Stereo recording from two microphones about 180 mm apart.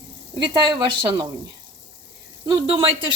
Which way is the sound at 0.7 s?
20° right (ahead or behind).